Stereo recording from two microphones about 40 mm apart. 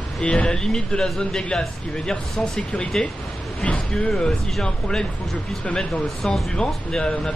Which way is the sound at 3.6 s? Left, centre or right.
Left.